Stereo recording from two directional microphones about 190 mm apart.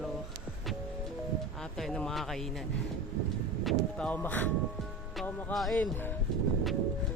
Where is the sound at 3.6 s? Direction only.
5° left (ahead or behind).